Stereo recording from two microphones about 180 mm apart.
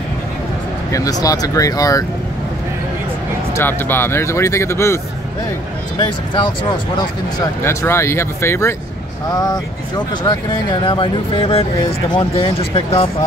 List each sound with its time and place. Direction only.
0.9 s speech: 20° left (ahead or behind)
3.5 s speech: 10° left (ahead or behind)
5.9 s speech: 25° left (ahead or behind)